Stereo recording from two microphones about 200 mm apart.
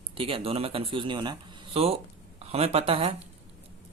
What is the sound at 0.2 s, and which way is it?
Speech, 25° right (ahead or behind).